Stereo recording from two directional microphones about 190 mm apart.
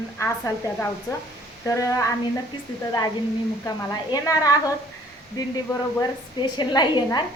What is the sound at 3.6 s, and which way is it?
Speech, 20° left (ahead or behind).